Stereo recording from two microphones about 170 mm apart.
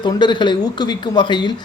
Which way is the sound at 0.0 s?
25° left (ahead or behind).